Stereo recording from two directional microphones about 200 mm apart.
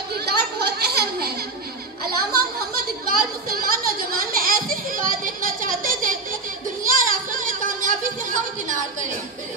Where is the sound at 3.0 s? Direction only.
45° right (ahead or behind).